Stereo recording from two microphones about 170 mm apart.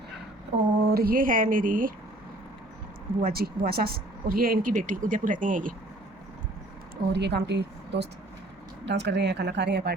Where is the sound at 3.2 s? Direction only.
60° right (ahead or behind).